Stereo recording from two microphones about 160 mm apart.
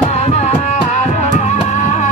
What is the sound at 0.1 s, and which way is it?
Music, 45° left (ahead or behind).